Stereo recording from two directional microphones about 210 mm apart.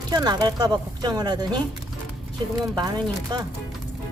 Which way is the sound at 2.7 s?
20° right (ahead or behind).